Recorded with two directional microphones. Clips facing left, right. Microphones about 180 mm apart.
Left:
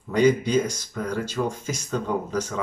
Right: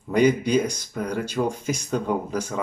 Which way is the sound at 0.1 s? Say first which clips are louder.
Even; 15° right (ahead or behind).